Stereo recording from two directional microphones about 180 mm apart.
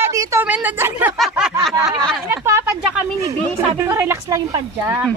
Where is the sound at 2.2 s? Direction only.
15° right (ahead or behind).